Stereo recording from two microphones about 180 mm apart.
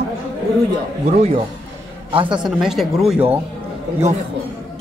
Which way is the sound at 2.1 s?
25° right (ahead or behind).